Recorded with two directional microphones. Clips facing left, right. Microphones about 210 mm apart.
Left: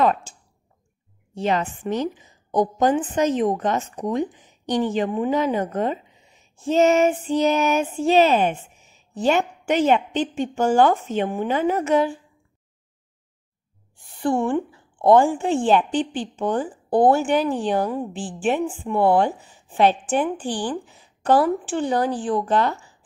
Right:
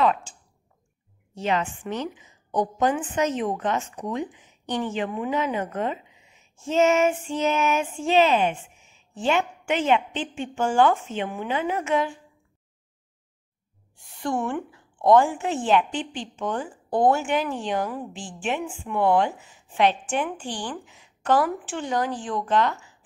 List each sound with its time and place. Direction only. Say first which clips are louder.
0.0 s clicking: left 2 dB; 40° left (ahead or behind)
1.3 s a woman's voice: left 3 dB; 35° left (ahead or behind)
14.0 s a woman's voice: left 5 dB; 30° left (ahead or behind)